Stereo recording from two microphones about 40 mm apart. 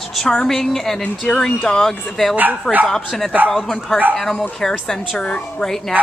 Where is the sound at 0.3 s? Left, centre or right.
Centre.